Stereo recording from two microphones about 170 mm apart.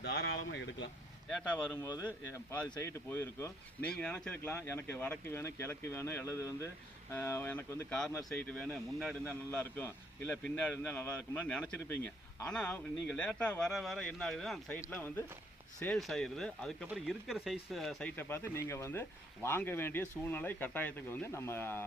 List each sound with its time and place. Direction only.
0.0 s speech: 90° left
1.3 s speech: centre (ahead or behind)
2.5 s speech: 15° left (ahead or behind); by 18.1 s centre (ahead or behind)
18.2 s speech: 15° left (ahead or behind)